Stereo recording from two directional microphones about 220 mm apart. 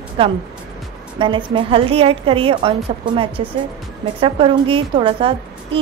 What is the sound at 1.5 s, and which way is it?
A woman's voice, 25° right (ahead or behind).